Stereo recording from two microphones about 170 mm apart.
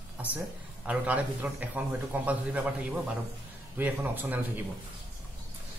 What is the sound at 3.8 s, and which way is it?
Speech, 10° right (ahead or behind).